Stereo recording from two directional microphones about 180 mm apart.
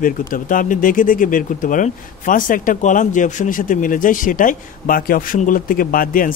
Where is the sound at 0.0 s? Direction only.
50° left (ahead or behind).